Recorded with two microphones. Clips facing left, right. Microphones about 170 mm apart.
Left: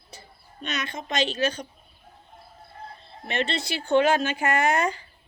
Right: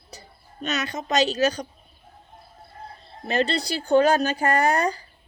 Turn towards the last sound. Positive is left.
turn(degrees=-35)  # may be behind; listen again after turning